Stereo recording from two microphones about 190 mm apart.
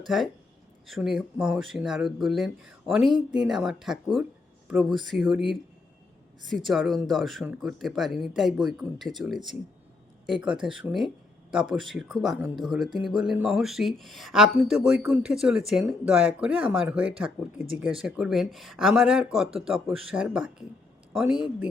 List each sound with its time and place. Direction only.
0.9 s speech: centre (ahead or behind)
6.7 s speech: centre (ahead or behind)